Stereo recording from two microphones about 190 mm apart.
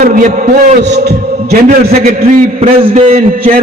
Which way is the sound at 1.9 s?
45° right (ahead or behind).